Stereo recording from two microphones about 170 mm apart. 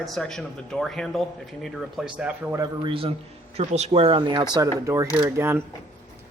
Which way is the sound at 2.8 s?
30° right (ahead or behind).